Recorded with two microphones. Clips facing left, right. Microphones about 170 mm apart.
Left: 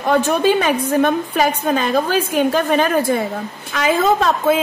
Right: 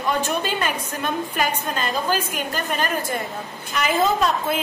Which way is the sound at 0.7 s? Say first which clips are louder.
Left 10 dB; 90° left.